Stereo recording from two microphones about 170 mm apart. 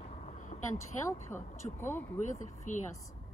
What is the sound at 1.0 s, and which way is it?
Speech, 15° left (ahead or behind).